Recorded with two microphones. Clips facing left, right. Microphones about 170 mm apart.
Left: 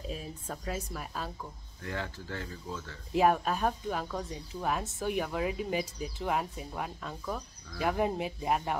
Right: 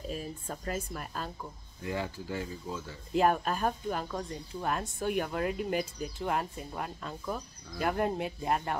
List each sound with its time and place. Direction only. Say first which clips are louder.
0.1 s speech: right 2 dB; centre (ahead or behind)
1.8 s speech: right 3 dB; 10° right (ahead or behind)
3.1 s speech: left 1 dB; centre (ahead or behind)